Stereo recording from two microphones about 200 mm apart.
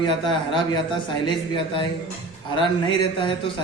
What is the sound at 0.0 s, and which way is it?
A man's voice, 25° left (ahead or behind).